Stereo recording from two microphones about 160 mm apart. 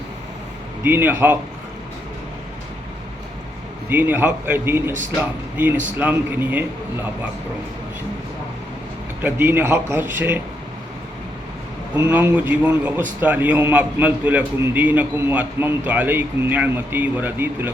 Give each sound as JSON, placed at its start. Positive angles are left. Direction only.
{"t": 0.8, "sound": "a man's voice", "side_deg": -15}
{"t": 3.8, "sound": "a man's voice", "side_deg": -15}
{"t": 6.0, "sound": "a man's voice", "side_deg": -10}
{"t": 9.2, "sound": "a man's voice", "side_deg": -15}
{"t": 11.9, "sound": "a man's voice", "side_deg": -10}